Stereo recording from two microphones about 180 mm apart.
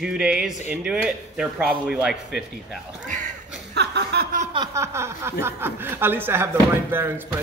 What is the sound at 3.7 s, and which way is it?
Chuckle, 70° right (ahead or behind).